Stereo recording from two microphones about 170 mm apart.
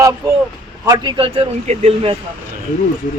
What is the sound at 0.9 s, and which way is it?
A man's voice, 25° right (ahead or behind).